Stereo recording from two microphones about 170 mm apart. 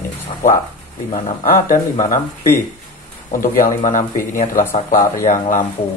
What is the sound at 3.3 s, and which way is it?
Speech, 50° left (ahead or behind).